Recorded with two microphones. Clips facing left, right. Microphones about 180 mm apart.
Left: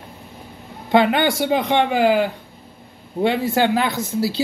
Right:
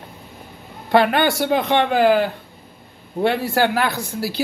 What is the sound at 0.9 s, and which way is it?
Speech, 20° left (ahead or behind).